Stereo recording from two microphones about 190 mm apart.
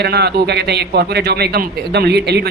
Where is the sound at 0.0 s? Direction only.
60° right (ahead or behind).